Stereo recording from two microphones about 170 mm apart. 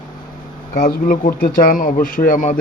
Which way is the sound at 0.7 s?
55° left (ahead or behind).